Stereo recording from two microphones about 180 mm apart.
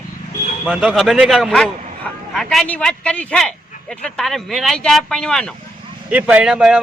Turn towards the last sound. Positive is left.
turn(degrees=-5)  # may be behind; listen again after turning